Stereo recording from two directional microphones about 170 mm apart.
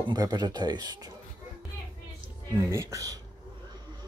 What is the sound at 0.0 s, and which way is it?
Speech, 25° right (ahead or behind).